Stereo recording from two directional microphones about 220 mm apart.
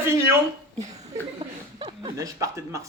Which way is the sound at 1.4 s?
25° right (ahead or behind).